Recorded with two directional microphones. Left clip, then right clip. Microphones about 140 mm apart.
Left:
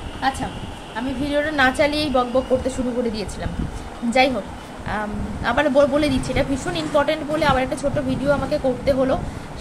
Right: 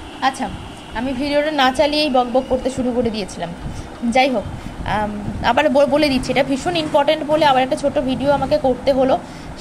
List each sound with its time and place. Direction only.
0.2 s speech: 45° right (ahead or behind)
1.6 s a woman's voice: 25° right (ahead or behind)
4.8 s a woman's voice: 40° right (ahead or behind)